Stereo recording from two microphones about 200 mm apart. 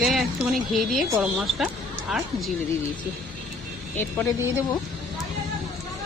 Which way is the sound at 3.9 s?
10° left (ahead or behind).